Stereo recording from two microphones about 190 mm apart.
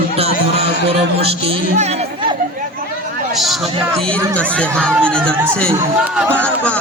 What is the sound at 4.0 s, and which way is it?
Speech, 5° left (ahead or behind).